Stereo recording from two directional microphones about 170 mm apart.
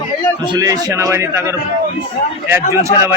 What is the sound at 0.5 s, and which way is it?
A man's voice, 20° right (ahead or behind).